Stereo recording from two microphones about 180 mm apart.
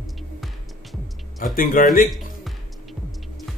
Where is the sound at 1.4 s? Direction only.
50° left (ahead or behind).